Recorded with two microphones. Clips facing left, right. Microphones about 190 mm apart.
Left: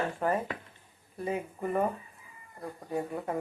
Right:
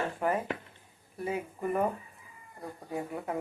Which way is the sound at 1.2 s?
10° right (ahead or behind).